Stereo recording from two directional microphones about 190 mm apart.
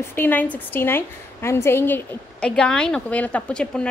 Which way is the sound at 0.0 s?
10° left (ahead or behind).